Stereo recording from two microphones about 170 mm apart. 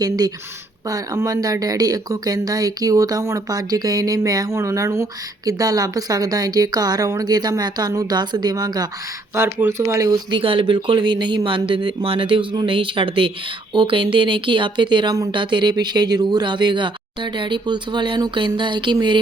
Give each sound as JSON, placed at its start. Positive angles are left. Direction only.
{"t": 0.9, "sound": "a woman's voice", "side_deg": -20}
{"t": 10.4, "sound": "a woman's voice", "side_deg": -30}